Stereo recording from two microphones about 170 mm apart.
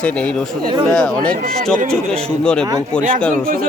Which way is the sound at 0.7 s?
25° right (ahead or behind).